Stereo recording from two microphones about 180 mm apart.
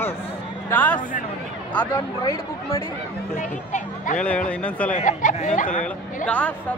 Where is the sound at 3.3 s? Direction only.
40° left (ahead or behind).